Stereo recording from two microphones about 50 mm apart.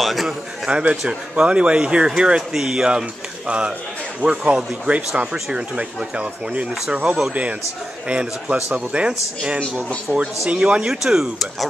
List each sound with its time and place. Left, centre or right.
0.0 s a man's voice: centre
0.7 s speech: centre
10.9 s speech: centre